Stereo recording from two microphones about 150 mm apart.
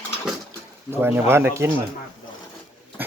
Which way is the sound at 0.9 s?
15° right (ahead or behind).